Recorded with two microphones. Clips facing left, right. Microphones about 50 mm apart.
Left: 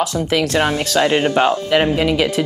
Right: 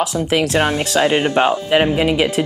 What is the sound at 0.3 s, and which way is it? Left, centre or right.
Speech, centre.